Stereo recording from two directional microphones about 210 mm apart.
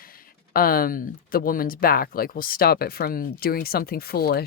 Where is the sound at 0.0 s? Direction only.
45° left (ahead or behind).